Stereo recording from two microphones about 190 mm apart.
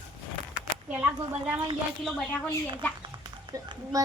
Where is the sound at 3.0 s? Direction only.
25° right (ahead or behind).